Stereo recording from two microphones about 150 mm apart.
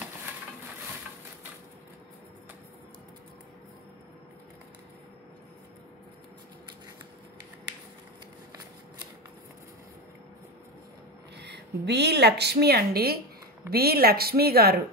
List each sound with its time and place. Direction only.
11.8 s a woman's voice: 90° right